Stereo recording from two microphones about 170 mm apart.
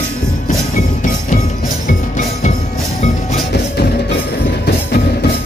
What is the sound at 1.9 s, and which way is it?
Music, 50° left (ahead or behind).